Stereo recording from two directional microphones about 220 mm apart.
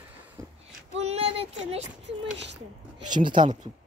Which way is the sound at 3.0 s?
20° right (ahead or behind).